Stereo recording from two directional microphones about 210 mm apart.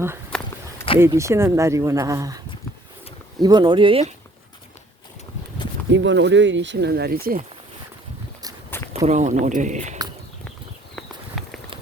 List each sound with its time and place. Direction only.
0.3 s walk: 5° left (ahead or behind)
0.9 s speech: 15° right (ahead or behind)
3.4 s speech: 20° right (ahead or behind)
5.9 s speech: 60° right (ahead or behind); by 7.4 s 45° right (ahead or behind)
8.7 s a sound: 10° left (ahead or behind)
9.0 s speech: 35° right (ahead or behind)
10.9 s walk: centre (ahead or behind)